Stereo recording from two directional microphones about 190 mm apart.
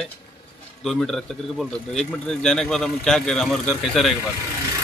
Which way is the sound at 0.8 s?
Centre (ahead or behind).